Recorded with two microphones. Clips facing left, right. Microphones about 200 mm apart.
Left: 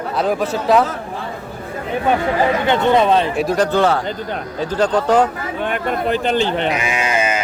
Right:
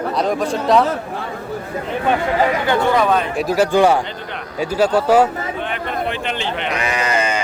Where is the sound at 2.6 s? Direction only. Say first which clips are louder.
Left 2 dB; 20° left (ahead or behind).